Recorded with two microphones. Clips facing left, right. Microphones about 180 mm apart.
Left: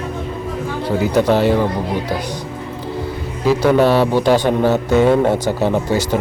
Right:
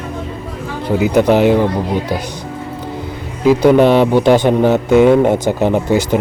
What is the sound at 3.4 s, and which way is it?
Speech, 15° right (ahead or behind).